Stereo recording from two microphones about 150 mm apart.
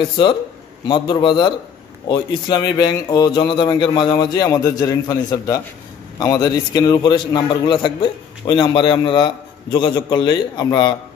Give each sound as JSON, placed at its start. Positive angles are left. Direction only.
{"t": 0.2, "sound": "a man's voice", "side_deg": 30}